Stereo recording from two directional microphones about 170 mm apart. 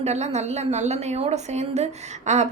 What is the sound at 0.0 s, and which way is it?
A woman's voice, 40° right (ahead or behind).